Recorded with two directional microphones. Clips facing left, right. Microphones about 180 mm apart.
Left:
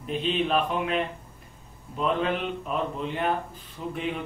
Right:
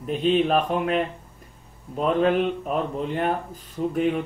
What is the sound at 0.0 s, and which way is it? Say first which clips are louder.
Speech: right 6 dB; 45° right (ahead or behind).